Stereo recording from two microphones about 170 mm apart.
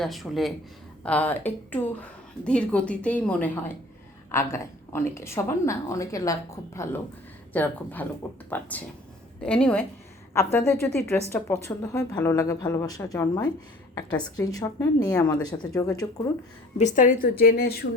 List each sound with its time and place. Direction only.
0.0 s a woman's voice: centre (ahead or behind); by 16.2 s 20° left (ahead or behind)
16.7 s a woman's voice: 45° left (ahead or behind); by 17.8 s 65° left (ahead or behind)